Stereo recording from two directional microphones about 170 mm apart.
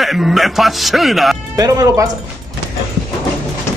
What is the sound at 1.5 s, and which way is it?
Speech, 20° right (ahead or behind).